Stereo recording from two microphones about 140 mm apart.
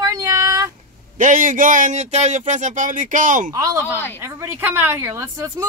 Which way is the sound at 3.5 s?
25° right (ahead or behind).